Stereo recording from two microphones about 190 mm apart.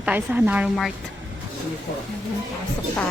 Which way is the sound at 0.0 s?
5° right (ahead or behind).